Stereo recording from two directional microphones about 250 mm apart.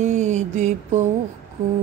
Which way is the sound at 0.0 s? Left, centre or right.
Right.